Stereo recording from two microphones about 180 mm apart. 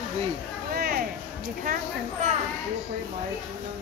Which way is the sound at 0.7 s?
60° right (ahead or behind).